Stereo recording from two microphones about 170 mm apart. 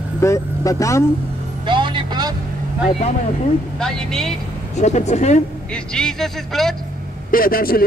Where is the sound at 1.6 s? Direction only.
30° right (ahead or behind).